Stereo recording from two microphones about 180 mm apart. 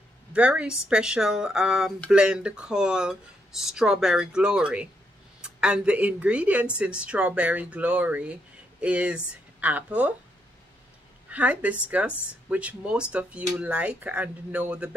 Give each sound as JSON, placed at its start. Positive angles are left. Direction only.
{"t": 0.3, "sound": "speech", "side_deg": -5}
{"t": 11.2, "sound": "a woman's voice", "side_deg": -10}